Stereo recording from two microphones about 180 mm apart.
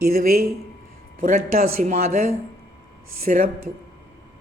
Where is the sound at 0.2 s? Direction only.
55° right (ahead or behind).